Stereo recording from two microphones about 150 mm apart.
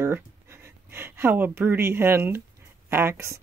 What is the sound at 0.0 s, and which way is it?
Speech, 15° right (ahead or behind).